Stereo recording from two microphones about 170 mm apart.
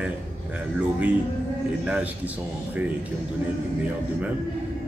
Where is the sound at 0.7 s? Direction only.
10° right (ahead or behind).